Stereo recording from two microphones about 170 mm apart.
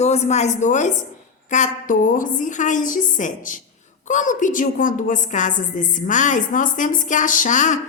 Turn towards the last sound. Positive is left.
turn(degrees=45)  # may be behind; listen again after turning